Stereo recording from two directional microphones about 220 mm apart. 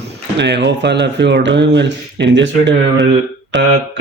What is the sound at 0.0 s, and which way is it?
Speech, 50° right (ahead or behind).